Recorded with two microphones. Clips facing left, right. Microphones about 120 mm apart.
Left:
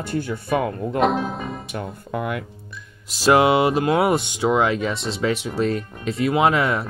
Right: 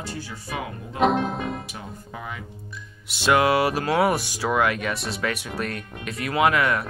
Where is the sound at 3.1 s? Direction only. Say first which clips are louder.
Left 4 dB; 35° left (ahead or behind).